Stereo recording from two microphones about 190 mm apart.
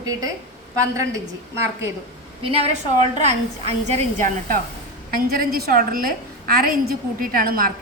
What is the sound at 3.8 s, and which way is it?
A woman's voice, 40° right (ahead or behind).